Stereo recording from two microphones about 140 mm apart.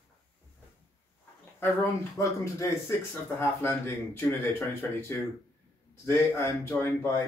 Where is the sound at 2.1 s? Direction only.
20° left (ahead or behind).